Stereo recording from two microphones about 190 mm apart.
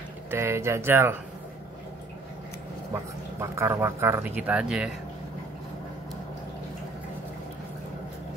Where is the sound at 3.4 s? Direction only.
15° right (ahead or behind).